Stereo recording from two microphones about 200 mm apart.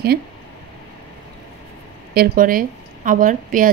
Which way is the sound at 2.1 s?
45° right (ahead or behind).